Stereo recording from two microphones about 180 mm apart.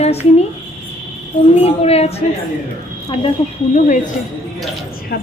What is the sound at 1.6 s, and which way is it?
Speech, 35° left (ahead or behind).